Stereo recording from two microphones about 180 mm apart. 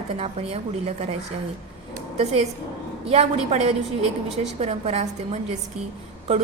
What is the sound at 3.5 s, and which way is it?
A woman's voice, 35° right (ahead or behind).